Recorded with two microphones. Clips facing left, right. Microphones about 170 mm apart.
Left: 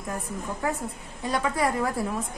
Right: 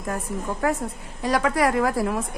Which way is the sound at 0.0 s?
75° right (ahead or behind).